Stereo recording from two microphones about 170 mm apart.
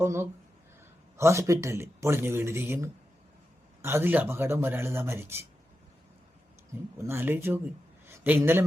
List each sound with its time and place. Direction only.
0.0 s speech: 15° right (ahead or behind)
7.0 s speech: 15° right (ahead or behind)
8.0 s a sound: 15° right (ahead or behind)